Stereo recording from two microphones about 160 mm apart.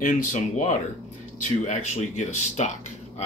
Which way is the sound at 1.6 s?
50° left (ahead or behind).